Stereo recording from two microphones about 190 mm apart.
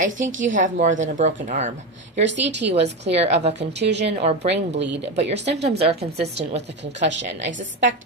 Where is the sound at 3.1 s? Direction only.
35° right (ahead or behind).